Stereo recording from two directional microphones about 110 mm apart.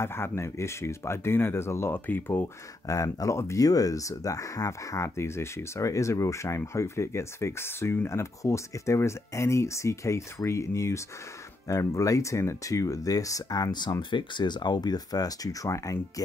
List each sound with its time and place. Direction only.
0.0 s speech: 20° left (ahead or behind)
2.9 s speech: 30° left (ahead or behind)